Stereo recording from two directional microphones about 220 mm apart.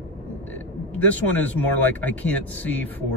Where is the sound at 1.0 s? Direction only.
10° left (ahead or behind).